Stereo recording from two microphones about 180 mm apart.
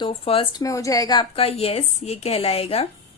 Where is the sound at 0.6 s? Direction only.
20° left (ahead or behind).